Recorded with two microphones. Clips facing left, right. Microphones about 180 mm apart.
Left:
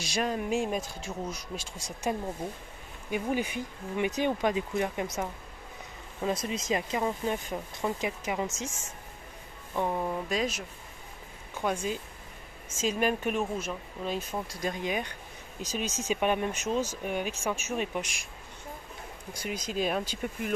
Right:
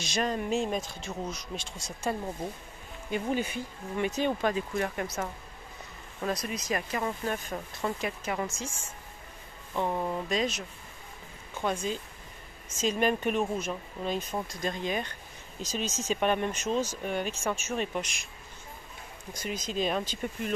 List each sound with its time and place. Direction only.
0.0 s speech: 10° left (ahead or behind)
9.8 s speech: 5° left (ahead or behind)
11.6 s speech: 10° left (ahead or behind)
19.3 s speech: 10° left (ahead or behind)